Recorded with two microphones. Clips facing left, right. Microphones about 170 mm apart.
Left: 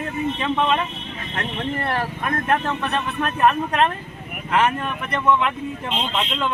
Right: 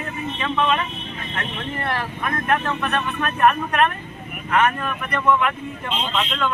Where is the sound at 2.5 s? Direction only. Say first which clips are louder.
Right 1 dB; 30° left (ahead or behind).